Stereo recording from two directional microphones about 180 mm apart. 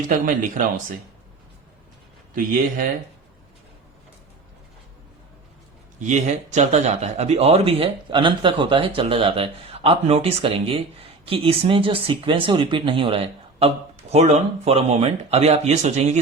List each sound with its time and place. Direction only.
2.3 s speech: 50° right (ahead or behind)
6.0 s speech: 40° right (ahead or behind)